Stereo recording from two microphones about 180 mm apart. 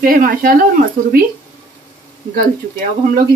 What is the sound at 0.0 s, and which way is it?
Speech, 50° right (ahead or behind).